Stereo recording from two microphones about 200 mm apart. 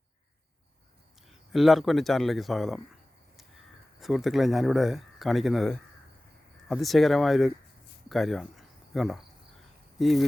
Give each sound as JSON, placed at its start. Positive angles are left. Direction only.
{"t": 1.3, "sound": "speech", "side_deg": 0}
{"t": 4.0, "sound": "speech", "side_deg": 0}